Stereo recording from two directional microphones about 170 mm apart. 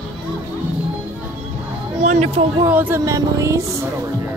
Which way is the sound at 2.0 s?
45° right (ahead or behind).